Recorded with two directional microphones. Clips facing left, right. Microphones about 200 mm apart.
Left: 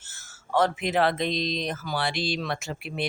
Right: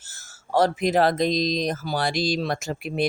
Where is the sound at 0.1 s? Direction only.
40° right (ahead or behind).